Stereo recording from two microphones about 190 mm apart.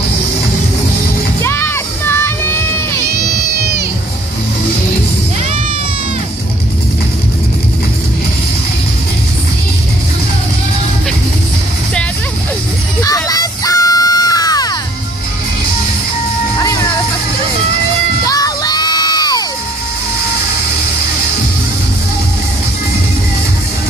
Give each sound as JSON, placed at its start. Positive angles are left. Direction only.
{"t": 1.4, "sound": "music", "side_deg": 15}
{"t": 13.0, "sound": "music", "side_deg": 20}
{"t": 18.2, "sound": "music", "side_deg": 20}